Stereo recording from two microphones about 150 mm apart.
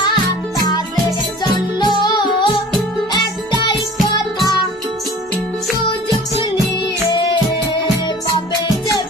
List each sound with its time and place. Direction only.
0.0 s music: 25° left (ahead or behind)
1.8 s music: 30° left (ahead or behind)
4.0 s music: 30° left (ahead or behind)